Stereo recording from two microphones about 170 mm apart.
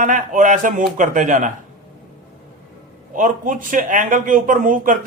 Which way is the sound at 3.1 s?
50° right (ahead or behind).